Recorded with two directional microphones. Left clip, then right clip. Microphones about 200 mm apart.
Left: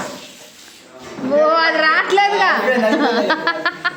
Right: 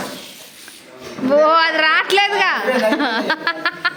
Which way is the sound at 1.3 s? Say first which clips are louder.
Right 1 dB; 20° right (ahead or behind).